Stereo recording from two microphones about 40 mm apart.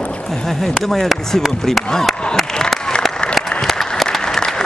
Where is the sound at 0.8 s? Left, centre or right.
Centre.